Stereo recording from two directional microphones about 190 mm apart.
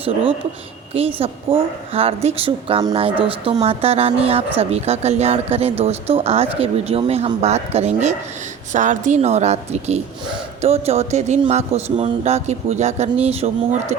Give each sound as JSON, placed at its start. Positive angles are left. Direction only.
{"t": 1.2, "sound": "speech", "side_deg": -30}